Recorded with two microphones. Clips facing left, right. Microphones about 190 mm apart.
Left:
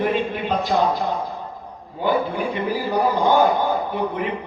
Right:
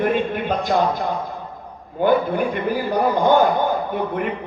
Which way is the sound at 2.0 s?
50° right (ahead or behind).